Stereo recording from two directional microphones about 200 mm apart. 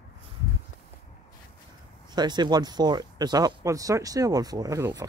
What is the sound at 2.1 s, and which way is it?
Speech, 20° right (ahead or behind).